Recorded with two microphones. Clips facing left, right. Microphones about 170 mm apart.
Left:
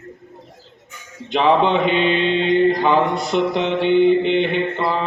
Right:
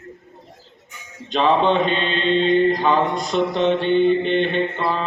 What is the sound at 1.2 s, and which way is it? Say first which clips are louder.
Mantra: left 1 dB; 10° left (ahead or behind).